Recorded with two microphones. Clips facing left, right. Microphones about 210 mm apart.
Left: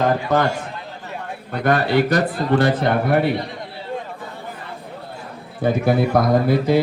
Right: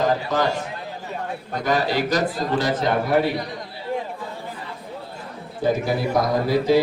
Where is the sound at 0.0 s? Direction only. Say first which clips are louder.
Left 3 dB; 60° left (ahead or behind).